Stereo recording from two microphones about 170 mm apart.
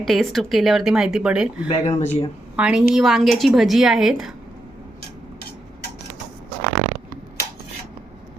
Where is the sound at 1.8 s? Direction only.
40° left (ahead or behind).